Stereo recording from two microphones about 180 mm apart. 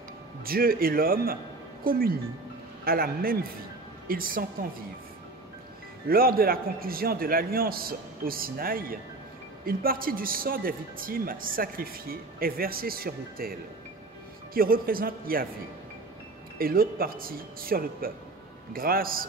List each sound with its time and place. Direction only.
0.5 s a man's voice: 55° right (ahead or behind)
6.0 s a man's voice: 55° right (ahead or behind)
16.5 s a man's voice: 55° right (ahead or behind)